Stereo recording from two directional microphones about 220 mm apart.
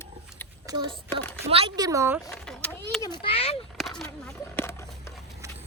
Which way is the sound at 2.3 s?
5° left (ahead or behind).